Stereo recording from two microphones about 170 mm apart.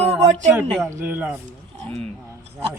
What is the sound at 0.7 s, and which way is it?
Speech, 5° left (ahead or behind).